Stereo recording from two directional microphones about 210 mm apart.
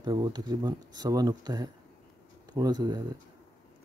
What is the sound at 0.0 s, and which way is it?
Speech, 20° right (ahead or behind).